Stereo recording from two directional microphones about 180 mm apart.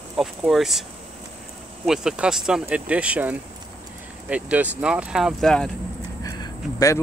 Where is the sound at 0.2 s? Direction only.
Centre (ahead or behind).